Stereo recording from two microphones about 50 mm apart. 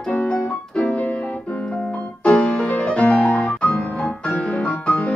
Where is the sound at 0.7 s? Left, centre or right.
Left.